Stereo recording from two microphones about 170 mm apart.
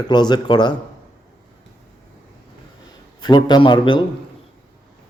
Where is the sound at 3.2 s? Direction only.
25° left (ahead or behind).